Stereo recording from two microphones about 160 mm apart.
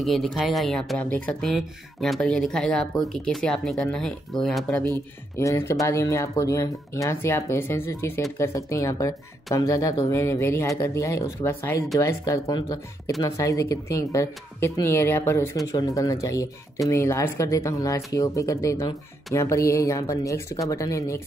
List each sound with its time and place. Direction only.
0.0 s speech: centre (ahead or behind)
5.4 s speech: 20° left (ahead or behind)